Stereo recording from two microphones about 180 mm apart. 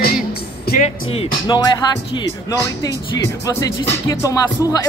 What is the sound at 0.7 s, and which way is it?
Speech, 40° left (ahead or behind).